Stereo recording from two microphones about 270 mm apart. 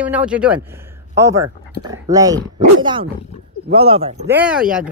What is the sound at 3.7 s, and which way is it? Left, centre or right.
Speech, right.